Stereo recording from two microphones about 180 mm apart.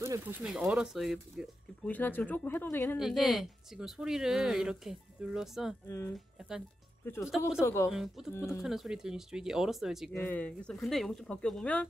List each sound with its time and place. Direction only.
0.0 s a sound: 15° right (ahead or behind)
0.4 s speech: 5° right (ahead or behind); by 3.0 s 15° left (ahead or behind)
3.0 s speech: centre (ahead or behind)
5.9 s speech: 10° left (ahead or behind)
7.6 s speech: 15° left (ahead or behind)
7.9 s speech: centre (ahead or behind)
8.3 s speech: 15° left (ahead or behind)
8.6 s speech: centre (ahead or behind)
10.1 s speech: 10° left (ahead or behind)